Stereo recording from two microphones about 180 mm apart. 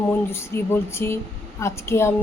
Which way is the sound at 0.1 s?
15° left (ahead or behind).